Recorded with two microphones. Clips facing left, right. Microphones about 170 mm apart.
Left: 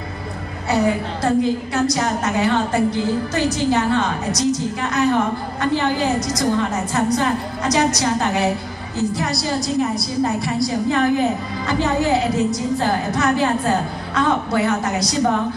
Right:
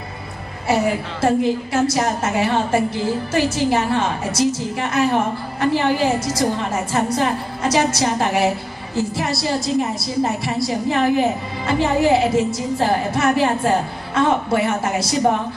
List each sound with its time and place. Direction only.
0.7 s a woman's voice: 25° right (ahead or behind)